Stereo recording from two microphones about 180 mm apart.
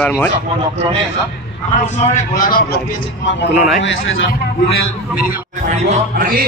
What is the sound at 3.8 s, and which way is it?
Speech, 90° left.